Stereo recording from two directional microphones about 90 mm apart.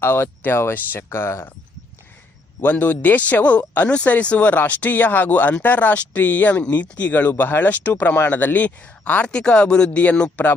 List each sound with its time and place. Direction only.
0.0 s speech: 20° left (ahead or behind)
2.6 s speech: 20° left (ahead or behind)